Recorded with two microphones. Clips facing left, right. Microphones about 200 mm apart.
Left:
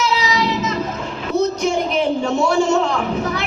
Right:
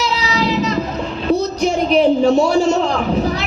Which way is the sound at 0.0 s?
35° right (ahead or behind).